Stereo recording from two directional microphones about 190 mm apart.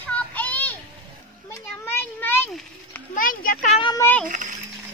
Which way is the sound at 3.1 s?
45° left (ahead or behind).